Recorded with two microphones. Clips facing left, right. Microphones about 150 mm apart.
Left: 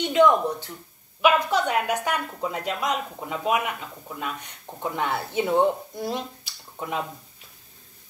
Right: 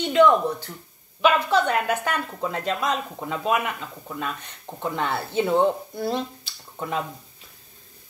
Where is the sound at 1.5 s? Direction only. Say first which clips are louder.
Right 2 dB; 15° left (ahead or behind).